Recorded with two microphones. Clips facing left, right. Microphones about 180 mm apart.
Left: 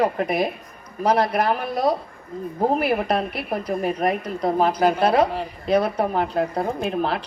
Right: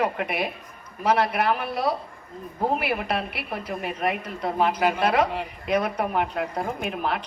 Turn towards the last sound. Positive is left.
turn(degrees=30)  # may be behind; listen again after turning